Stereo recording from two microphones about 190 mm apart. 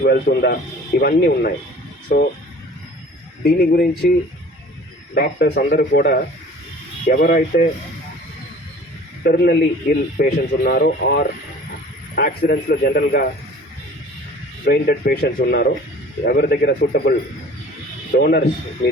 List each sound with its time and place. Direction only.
0.0 s a man's voice: 60° left (ahead or behind)
3.4 s a man's voice: 50° left (ahead or behind)
5.1 s a man's voice: 60° left (ahead or behind)
7.1 s a man's voice: 45° left (ahead or behind)
9.2 s a man's voice: 55° left (ahead or behind)
14.6 s a man's voice: 55° left (ahead or behind)